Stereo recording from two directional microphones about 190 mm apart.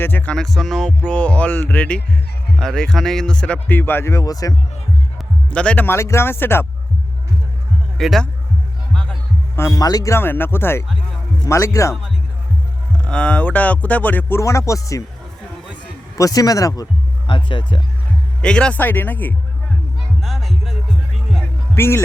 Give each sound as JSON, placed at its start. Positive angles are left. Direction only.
{"t": 0.0, "sound": "music", "side_deg": 10}
{"t": 5.1, "sound": "speech", "side_deg": 5}
{"t": 7.9, "sound": "speech", "side_deg": 0}
{"t": 9.6, "sound": "music", "side_deg": 15}
{"t": 13.1, "sound": "music", "side_deg": 5}
{"t": 16.1, "sound": "speech", "side_deg": 20}
{"t": 18.4, "sound": "music", "side_deg": 5}
{"t": 20.2, "sound": "speech", "side_deg": 0}
{"t": 21.8, "sound": "music", "side_deg": 10}